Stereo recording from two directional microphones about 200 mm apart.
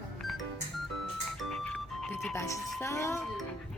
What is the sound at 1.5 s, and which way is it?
Music, 5° left (ahead or behind).